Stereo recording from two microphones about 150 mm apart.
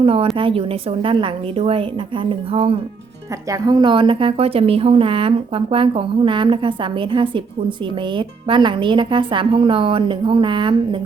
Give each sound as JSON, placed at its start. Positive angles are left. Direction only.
{"t": 0.0, "sound": "a woman's voice", "side_deg": -40}
{"t": 3.5, "sound": "a woman's voice", "side_deg": -30}